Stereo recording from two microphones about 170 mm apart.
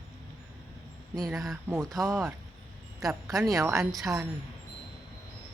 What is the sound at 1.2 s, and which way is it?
Speech, centre (ahead or behind).